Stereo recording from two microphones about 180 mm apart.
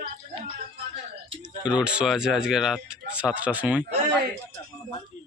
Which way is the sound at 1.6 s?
5° right (ahead or behind).